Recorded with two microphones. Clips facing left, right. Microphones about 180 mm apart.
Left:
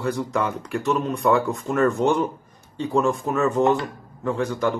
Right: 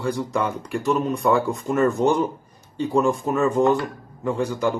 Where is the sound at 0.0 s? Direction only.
Centre (ahead or behind).